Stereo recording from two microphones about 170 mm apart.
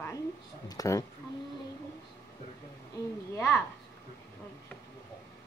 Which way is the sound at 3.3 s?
15° left (ahead or behind).